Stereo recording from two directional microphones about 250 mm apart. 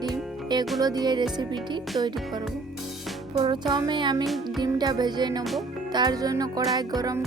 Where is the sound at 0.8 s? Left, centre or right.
Centre.